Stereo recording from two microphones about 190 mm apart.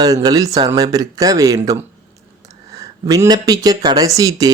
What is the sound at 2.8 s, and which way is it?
Speech, 15° right (ahead or behind).